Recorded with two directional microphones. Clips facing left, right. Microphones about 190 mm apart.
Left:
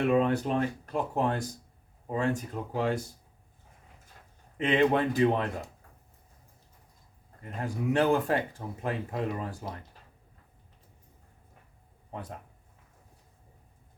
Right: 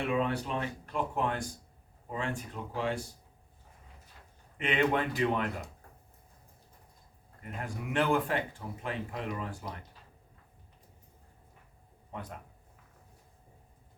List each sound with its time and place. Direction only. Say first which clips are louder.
0.1 s speech: left 6 dB; 45° left (ahead or behind)
4.5 s speech: left 4 dB; 35° left (ahead or behind)
7.6 s speech: left 5 dB; 40° left (ahead or behind)